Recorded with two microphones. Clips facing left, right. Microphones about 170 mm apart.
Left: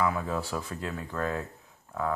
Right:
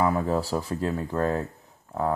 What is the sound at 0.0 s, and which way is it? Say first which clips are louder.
Speech: right 5 dB; 40° right (ahead or behind).